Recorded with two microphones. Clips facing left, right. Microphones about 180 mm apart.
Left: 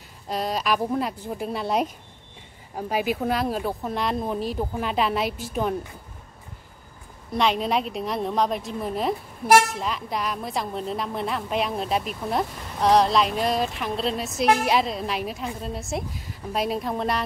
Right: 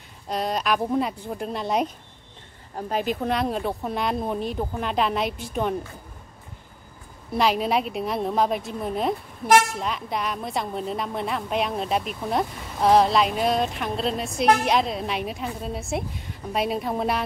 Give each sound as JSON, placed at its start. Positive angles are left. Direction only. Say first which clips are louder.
{"t": 0.3, "sound": "a woman's voice", "louder": "even", "side_deg": 0}
{"t": 7.3, "sound": "a woman's voice", "louder": "right 1 dB", "side_deg": -5}